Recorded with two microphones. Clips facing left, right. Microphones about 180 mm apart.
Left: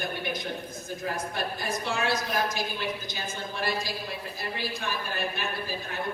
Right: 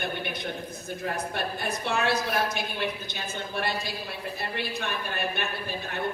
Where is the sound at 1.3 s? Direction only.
60° right (ahead or behind).